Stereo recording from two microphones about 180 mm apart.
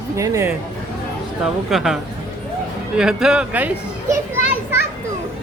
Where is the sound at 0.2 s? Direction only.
15° right (ahead or behind).